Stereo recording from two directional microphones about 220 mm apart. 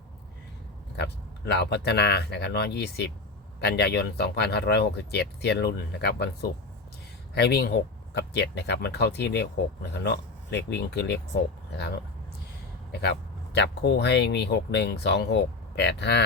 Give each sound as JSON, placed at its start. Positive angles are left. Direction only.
{"t": 0.9, "sound": "speech", "side_deg": 45}
{"t": 13.5, "sound": "speech", "side_deg": 50}